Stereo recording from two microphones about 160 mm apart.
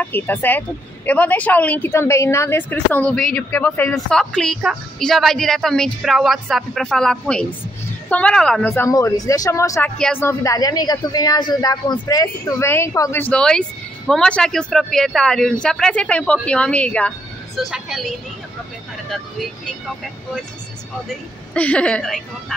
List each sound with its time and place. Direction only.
0.0 s a woman's voice: 10° left (ahead or behind)
8.6 s speech: 15° left (ahead or behind)
9.9 s a woman's voice: 5° left (ahead or behind)
10.2 s speech: 20° left (ahead or behind)
17.6 s a woman's voice: 5° right (ahead or behind)
21.5 s speech: 10° left (ahead or behind)